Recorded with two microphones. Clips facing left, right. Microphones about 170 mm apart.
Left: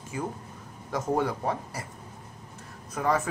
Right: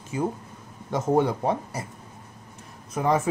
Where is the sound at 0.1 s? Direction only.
25° right (ahead or behind).